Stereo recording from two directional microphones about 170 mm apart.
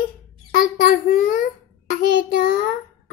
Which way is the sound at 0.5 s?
55° left (ahead or behind).